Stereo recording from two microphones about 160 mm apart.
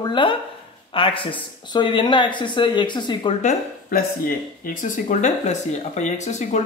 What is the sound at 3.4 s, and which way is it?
Speech, 55° left (ahead or behind).